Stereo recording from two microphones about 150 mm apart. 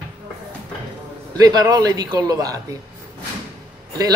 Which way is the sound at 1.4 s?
25° right (ahead or behind).